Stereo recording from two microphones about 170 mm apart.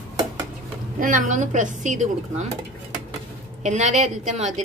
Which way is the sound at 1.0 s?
50° right (ahead or behind).